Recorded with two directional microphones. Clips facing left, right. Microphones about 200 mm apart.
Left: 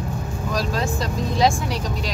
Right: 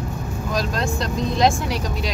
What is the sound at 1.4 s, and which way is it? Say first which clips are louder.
Speech: even; centre (ahead or behind).